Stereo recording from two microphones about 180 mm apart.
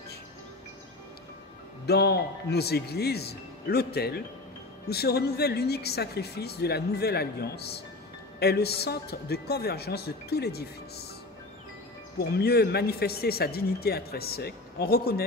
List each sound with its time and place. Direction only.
1.9 s speech: 65° left (ahead or behind)
12.2 s speech: 60° left (ahead or behind)